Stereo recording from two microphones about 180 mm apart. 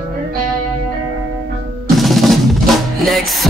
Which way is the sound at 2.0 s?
Centre (ahead or behind).